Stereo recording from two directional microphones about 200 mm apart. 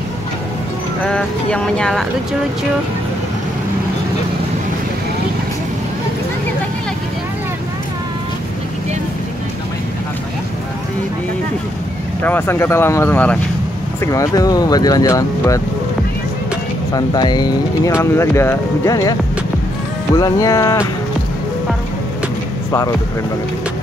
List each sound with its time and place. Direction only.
1.1 s speech: 5° left (ahead or behind)
12.2 s speech: 10° left (ahead or behind)
16.9 s speech: 20° left (ahead or behind)
20.2 s speech: 20° left (ahead or behind)